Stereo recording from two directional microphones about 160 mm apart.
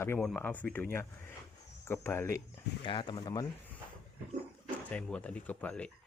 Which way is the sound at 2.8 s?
30° left (ahead or behind).